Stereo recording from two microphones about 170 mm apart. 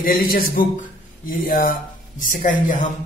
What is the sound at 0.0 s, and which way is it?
A man's voice, 60° left (ahead or behind).